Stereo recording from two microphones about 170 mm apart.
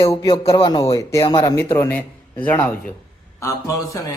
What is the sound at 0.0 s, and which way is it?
A man's voice, 20° left (ahead or behind).